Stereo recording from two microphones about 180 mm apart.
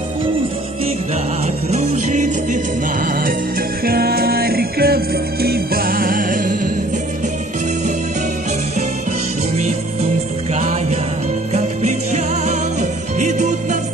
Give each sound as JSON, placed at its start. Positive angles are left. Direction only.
{"t": 1.7, "sound": "music", "side_deg": -40}
{"t": 10.5, "sound": "music", "side_deg": -40}